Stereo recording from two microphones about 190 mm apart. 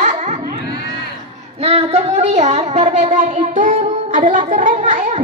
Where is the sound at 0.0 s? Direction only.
40° right (ahead or behind).